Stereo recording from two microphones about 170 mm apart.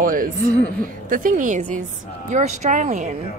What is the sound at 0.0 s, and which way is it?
A woman's voice, 55° right (ahead or behind).